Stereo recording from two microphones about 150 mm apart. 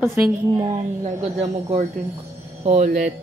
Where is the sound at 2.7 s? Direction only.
55° right (ahead or behind).